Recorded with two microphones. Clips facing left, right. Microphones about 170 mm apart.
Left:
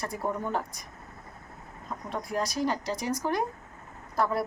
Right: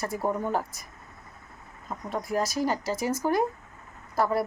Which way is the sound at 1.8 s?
5° right (ahead or behind).